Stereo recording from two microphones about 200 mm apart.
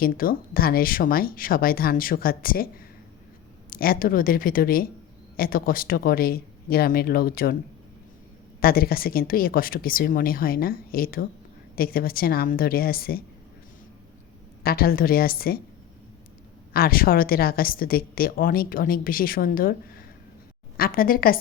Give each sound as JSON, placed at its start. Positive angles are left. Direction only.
{"t": 0.0, "sound": "a woman's voice", "side_deg": 45}
{"t": 3.7, "sound": "a woman's voice", "side_deg": 45}
{"t": 8.6, "sound": "a woman's voice", "side_deg": 50}
{"t": 14.6, "sound": "a woman's voice", "side_deg": 50}
{"t": 16.7, "sound": "a woman's voice", "side_deg": 45}